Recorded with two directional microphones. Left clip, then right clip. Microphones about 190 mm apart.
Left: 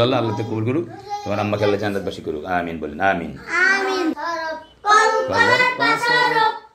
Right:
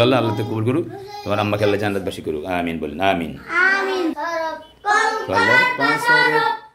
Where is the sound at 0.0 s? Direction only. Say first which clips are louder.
Right 2 dB; 25° right (ahead or behind).